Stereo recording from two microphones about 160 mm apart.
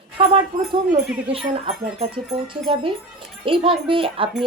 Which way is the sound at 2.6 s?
35° right (ahead or behind).